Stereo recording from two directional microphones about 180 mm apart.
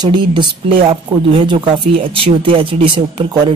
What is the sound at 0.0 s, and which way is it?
Speech, 25° right (ahead or behind).